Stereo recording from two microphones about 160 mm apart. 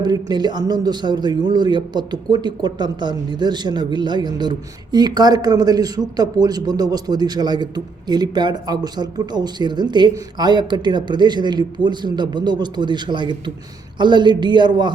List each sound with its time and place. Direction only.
0.0 s speech: 25° right (ahead or behind)